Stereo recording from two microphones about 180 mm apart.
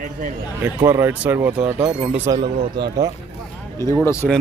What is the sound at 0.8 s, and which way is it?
Speech, 15° right (ahead or behind).